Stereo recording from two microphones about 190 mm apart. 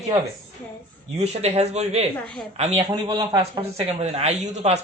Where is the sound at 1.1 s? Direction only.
35° right (ahead or behind).